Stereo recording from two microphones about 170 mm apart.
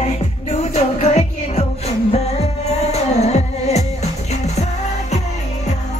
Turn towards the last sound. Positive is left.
turn(degrees=40)  # may be behind; listen again after turning